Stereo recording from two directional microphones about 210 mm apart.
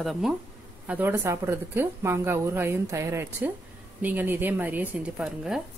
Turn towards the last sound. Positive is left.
turn(degrees=-5)  # may be behind; listen again after turning